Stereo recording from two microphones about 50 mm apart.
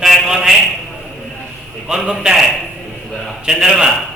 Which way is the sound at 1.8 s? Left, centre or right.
Centre.